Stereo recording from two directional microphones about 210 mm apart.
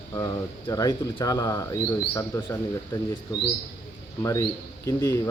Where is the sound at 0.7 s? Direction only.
15° left (ahead or behind).